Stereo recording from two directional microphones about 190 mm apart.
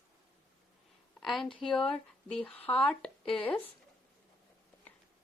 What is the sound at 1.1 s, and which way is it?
A woman's voice, centre (ahead or behind).